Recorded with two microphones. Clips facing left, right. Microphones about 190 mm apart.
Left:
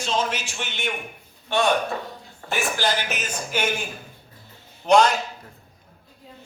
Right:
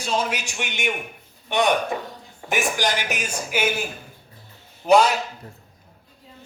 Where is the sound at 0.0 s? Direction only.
10° right (ahead or behind).